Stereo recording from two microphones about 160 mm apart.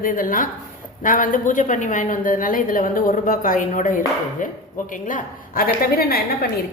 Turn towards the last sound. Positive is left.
turn(degrees=70)  # may be behind; listen again after turning